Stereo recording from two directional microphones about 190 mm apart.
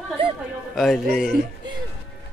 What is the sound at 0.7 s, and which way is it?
Speech, centre (ahead or behind).